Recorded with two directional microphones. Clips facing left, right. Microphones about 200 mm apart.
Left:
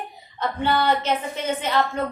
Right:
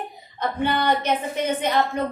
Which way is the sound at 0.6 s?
15° right (ahead or behind).